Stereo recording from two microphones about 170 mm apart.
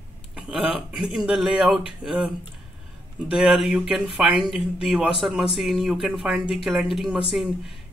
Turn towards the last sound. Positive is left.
turn(degrees=0)  # may be behind; listen again after turning